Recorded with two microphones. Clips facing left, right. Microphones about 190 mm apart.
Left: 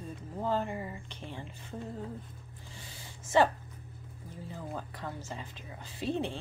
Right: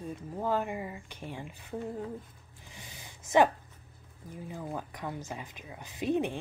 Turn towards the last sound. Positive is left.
turn(degrees=-15)  # may be behind; listen again after turning